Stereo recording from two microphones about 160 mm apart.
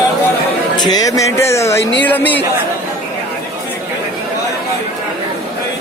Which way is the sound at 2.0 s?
10° left (ahead or behind).